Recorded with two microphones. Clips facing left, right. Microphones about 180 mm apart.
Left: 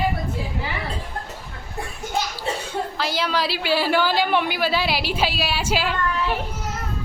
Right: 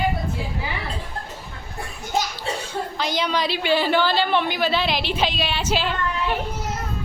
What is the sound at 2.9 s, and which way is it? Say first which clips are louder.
A woman's voice: right 1 dB; 5° left (ahead or behind).